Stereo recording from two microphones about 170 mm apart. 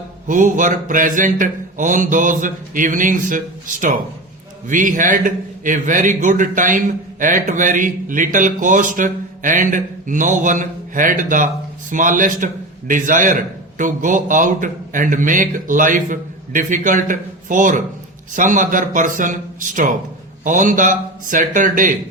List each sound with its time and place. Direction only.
0.3 s a man's voice: 50° right (ahead or behind)